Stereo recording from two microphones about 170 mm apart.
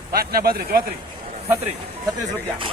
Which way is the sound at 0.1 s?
65° right (ahead or behind).